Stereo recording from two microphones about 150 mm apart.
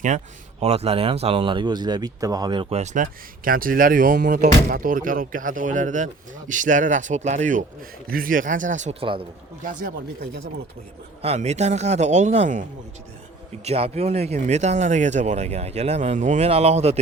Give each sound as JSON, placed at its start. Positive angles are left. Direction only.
{"t": 0.6, "sound": "speech", "side_deg": -45}
{"t": 8.1, "sound": "speech", "side_deg": -70}
{"t": 11.2, "sound": "speech", "side_deg": -45}
{"t": 13.7, "sound": "speech", "side_deg": -45}